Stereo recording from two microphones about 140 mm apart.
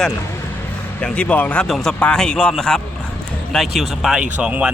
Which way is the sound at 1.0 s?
10° left (ahead or behind).